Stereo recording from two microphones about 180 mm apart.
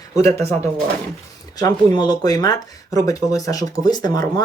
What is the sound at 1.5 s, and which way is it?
Speech, 20° left (ahead or behind).